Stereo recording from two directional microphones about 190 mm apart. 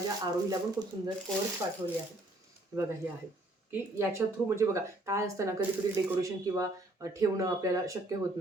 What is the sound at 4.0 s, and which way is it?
Speech, 15° right (ahead or behind).